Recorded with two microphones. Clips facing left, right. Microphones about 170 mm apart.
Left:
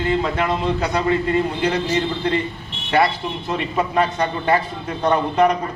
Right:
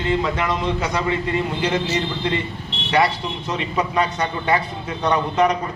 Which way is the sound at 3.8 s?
40° left (ahead or behind).